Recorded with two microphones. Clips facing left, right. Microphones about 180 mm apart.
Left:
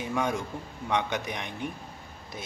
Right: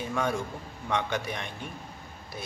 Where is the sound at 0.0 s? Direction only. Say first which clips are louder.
Even; 15° left (ahead or behind).